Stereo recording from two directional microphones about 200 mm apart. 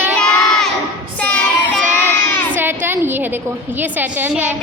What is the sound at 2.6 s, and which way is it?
A woman's voice, 10° right (ahead or behind).